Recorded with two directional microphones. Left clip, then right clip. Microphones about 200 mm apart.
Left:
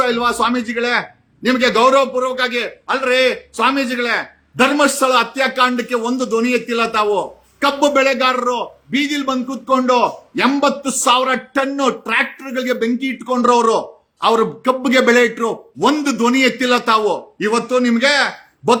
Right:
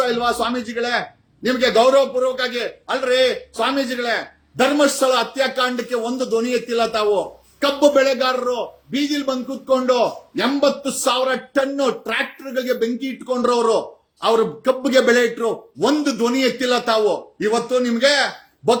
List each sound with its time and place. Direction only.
0.0 s a man's voice: 15° left (ahead or behind)